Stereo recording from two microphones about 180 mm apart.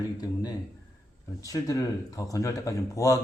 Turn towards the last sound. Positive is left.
turn(degrees=20)  # may be behind; listen again after turning